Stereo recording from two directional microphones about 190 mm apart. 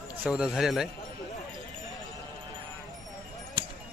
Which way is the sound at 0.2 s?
5° right (ahead or behind).